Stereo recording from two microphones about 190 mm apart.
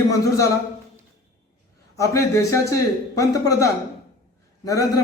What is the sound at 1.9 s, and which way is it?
A man's voice, 15° left (ahead or behind).